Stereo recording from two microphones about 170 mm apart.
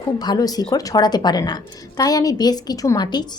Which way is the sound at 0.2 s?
20° left (ahead or behind).